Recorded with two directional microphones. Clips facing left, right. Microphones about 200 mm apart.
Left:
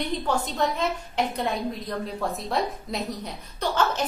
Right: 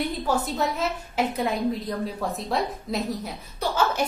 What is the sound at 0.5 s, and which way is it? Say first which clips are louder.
A woman's voice: even; 5° right (ahead or behind).